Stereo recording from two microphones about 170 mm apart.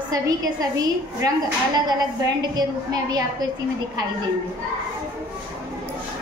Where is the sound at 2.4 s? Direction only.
25° right (ahead or behind).